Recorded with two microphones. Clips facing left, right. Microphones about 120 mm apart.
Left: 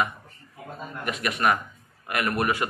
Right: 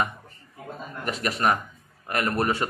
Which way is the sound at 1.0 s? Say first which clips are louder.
Even; 35° right (ahead or behind).